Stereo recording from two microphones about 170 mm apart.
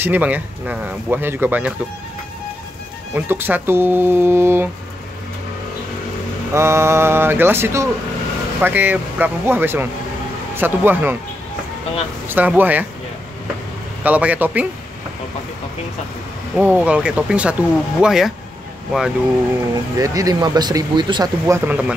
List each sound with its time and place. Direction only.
0.0 s speech: 10° right (ahead or behind)
3.2 s speech: 10° right (ahead or behind)
6.5 s speech: 15° right (ahead or behind)
12.3 s speech: 10° right (ahead or behind)
14.0 s speech: 10° right (ahead or behind)
16.5 s speech: 5° right (ahead or behind)
20.0 s speech: 20° right (ahead or behind)